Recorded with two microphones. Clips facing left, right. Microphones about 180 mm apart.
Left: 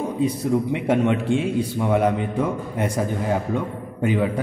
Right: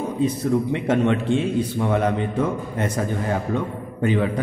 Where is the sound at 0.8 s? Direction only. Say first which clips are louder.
Even; 10° left (ahead or behind).